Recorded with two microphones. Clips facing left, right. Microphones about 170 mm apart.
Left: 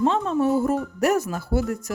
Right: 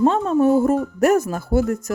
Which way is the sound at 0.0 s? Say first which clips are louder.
Right 5 dB; 45° right (ahead or behind).